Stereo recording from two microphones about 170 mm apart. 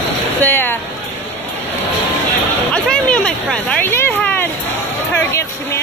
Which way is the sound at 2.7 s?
10° left (ahead or behind).